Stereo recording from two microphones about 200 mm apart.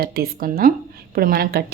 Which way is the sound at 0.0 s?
50° right (ahead or behind).